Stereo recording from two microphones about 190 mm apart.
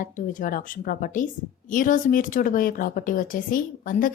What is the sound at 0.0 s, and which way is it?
A woman's voice, 45° left (ahead or behind).